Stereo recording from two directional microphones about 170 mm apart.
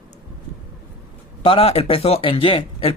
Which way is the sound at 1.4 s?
35° left (ahead or behind).